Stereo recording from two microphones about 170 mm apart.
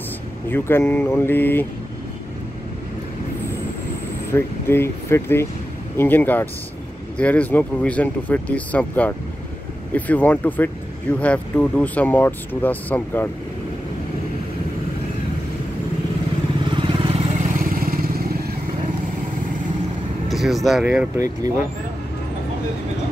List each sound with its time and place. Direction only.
0.5 s speech: 15° left (ahead or behind)
4.3 s speech: 15° left (ahead or behind)
16.6 s vehicle: 30° right (ahead or behind); by 18.1 s 55° right (ahead or behind)
20.2 s speech: centre (ahead or behind)